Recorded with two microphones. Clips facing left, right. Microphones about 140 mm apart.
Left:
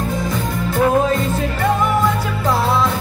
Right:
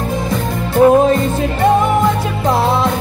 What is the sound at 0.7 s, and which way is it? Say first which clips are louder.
Music: right 7 dB; 25° right (ahead or behind).